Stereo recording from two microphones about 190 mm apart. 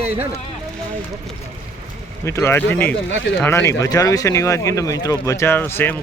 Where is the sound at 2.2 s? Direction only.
15° left (ahead or behind).